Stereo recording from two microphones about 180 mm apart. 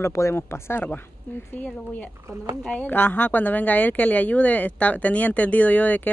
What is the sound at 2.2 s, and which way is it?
Speech, 15° right (ahead or behind).